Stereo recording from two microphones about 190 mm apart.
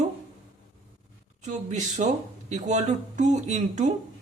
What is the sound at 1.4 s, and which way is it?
Speech, 40° right (ahead or behind).